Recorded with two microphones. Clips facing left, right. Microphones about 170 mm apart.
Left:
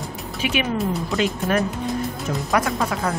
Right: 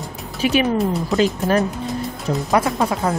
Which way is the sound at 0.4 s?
35° right (ahead or behind).